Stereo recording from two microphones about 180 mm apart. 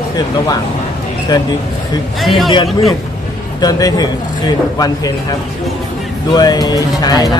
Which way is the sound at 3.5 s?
20° left (ahead or behind).